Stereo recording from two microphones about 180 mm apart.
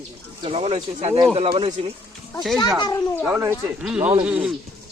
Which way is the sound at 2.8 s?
20° left (ahead or behind).